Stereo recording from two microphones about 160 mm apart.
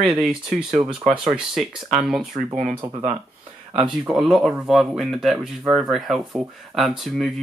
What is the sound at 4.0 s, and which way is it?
Speech, 5° right (ahead or behind).